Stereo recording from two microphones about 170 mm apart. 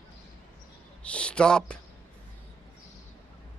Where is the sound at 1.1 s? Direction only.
5° left (ahead or behind).